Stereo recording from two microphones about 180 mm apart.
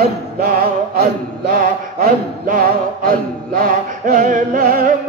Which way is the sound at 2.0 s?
50° right (ahead or behind).